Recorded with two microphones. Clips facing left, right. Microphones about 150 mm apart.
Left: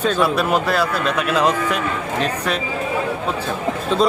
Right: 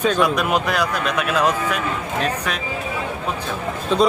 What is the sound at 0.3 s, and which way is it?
A man's voice, 15° right (ahead or behind).